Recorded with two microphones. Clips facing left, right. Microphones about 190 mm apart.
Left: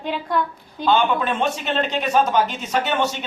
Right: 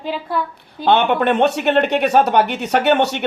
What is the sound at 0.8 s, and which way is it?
A woman's voice, 65° right (ahead or behind).